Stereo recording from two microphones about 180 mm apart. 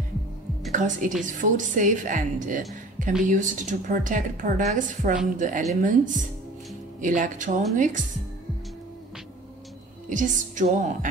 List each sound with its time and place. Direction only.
0.7 s a woman's voice: 45° right (ahead or behind)
10.0 s a woman's voice: 45° right (ahead or behind)